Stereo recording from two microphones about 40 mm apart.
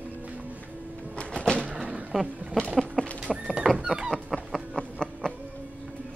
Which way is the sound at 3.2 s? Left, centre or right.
Centre.